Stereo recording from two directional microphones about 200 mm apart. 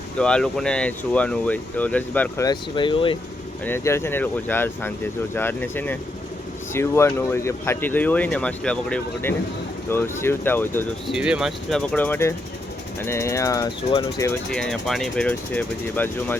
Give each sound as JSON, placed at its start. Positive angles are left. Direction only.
{"t": 0.2, "sound": "speech", "side_deg": 5}
{"t": 2.5, "sound": "speech", "side_deg": 25}
{"t": 3.7, "sound": "speech", "side_deg": 10}
{"t": 11.1, "sound": "speech", "side_deg": -5}
{"t": 14.5, "sound": "speech", "side_deg": 0}